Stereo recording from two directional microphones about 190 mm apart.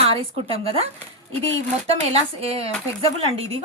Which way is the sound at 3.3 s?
30° right (ahead or behind).